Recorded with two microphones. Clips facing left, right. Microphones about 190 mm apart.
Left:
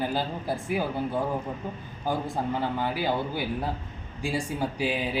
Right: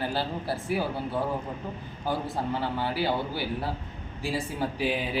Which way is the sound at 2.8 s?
15° left (ahead or behind).